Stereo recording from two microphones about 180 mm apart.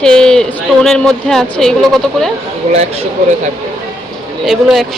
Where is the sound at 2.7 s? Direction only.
35° right (ahead or behind).